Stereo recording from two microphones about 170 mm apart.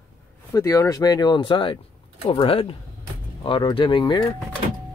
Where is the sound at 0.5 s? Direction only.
20° left (ahead or behind).